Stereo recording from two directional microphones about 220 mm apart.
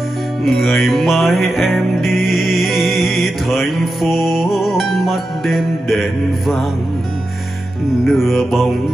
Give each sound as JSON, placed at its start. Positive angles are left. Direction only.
{"t": 0.4, "sound": "music", "side_deg": 0}
{"t": 8.0, "sound": "music", "side_deg": 0}